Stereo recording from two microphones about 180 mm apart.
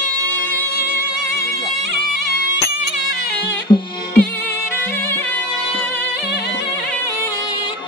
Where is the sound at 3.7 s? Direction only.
25° left (ahead or behind).